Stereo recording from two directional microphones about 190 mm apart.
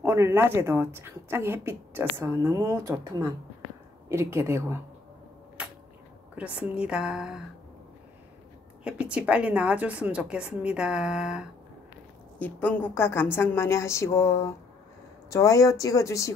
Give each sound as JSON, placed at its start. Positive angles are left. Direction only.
{"t": 0.0, "sound": "a woman's voice", "side_deg": -15}
{"t": 6.3, "sound": "a woman's voice", "side_deg": -5}
{"t": 8.8, "sound": "a woman's voice", "side_deg": -5}
{"t": 12.4, "sound": "a woman's voice", "side_deg": 10}